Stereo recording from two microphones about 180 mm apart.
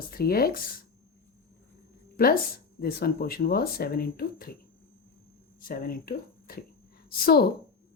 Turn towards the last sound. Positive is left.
turn(degrees=60)  # may be behind; listen again after turning